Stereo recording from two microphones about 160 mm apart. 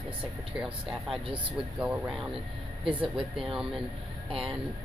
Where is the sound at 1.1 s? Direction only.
35° right (ahead or behind).